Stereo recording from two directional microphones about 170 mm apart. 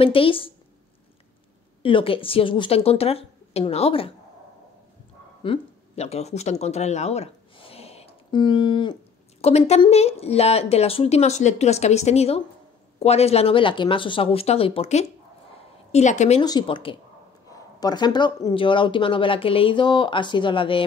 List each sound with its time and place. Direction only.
0.0 s speech: 30° left (ahead or behind)
1.8 s speech: 30° left (ahead or behind)
5.4 s speech: 35° left (ahead or behind)
9.4 s speech: 40° left (ahead or behind)
16.4 s speech: 25° left (ahead or behind)